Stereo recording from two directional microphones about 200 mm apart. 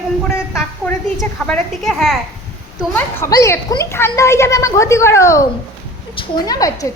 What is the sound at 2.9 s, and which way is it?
A child's voice, 15° left (ahead or behind).